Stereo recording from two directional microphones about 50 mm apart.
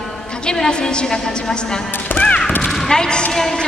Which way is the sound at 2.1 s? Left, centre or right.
Left.